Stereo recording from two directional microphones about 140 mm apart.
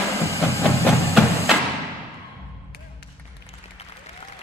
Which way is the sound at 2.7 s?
90° left.